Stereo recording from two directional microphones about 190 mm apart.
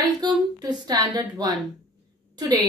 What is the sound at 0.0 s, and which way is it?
A woman's voice, 20° right (ahead or behind).